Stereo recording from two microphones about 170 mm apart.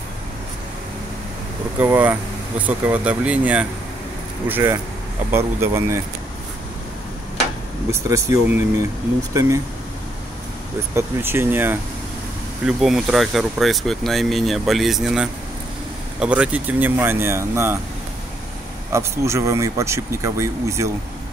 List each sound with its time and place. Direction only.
1.8 s speech: 10° right (ahead or behind)
7.9 s speech: 15° right (ahead or behind)
11.0 s speech: 15° right (ahead or behind)
18.9 s speech: 15° right (ahead or behind)